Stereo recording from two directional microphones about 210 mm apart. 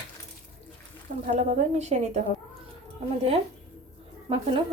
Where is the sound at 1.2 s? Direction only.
35° right (ahead or behind).